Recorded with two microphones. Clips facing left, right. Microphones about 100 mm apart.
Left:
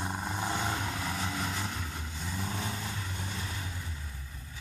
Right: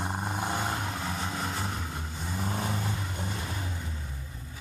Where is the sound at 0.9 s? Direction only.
30° right (ahead or behind).